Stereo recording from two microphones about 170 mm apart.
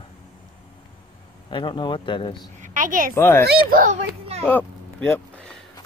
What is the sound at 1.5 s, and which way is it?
Speech, 30° left (ahead or behind).